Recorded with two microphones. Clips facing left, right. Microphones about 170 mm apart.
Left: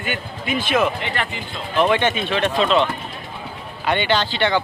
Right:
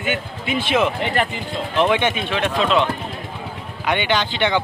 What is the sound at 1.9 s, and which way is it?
Speech, 15° right (ahead or behind).